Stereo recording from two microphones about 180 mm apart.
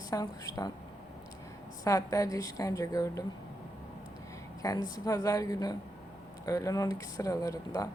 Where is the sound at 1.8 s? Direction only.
20° left (ahead or behind).